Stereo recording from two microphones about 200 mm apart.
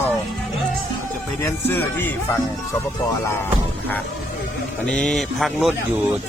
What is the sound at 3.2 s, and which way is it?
Music, 10° left (ahead or behind).